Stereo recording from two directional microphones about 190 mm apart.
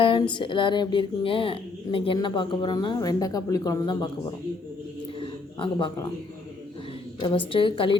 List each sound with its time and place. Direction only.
0.0 s speech: 25° left (ahead or behind)
5.2 s a sound: 25° left (ahead or behind)
7.2 s speech: 25° left (ahead or behind)